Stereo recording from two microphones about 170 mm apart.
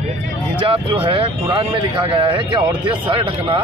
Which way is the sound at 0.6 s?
30° right (ahead or behind).